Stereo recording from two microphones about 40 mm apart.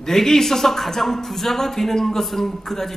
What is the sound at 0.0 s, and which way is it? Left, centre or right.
A man's voice, centre.